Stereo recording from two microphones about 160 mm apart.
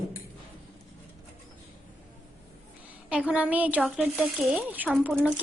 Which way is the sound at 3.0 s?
10° right (ahead or behind).